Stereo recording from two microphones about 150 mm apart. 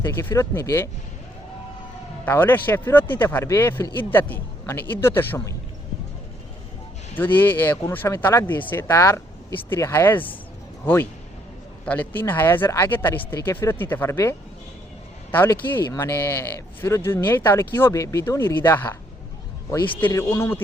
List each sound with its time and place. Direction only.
0.0 s speech: 20° left (ahead or behind)
2.2 s a man's voice: 15° left (ahead or behind)
7.2 s a man's voice: 10° left (ahead or behind)
20.0 s a man's voice: 15° left (ahead or behind)